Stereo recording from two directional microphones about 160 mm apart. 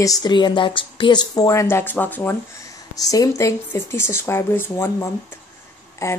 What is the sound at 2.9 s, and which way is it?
A woman's voice, 20° left (ahead or behind).